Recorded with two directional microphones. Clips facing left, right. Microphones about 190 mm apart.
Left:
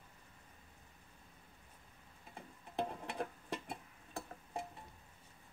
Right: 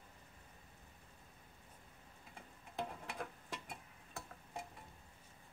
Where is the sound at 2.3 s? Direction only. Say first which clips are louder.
Left 5 dB; 30° left (ahead or behind).